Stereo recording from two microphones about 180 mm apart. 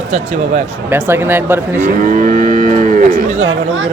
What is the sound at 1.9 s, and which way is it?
Moo, 45° right (ahead or behind).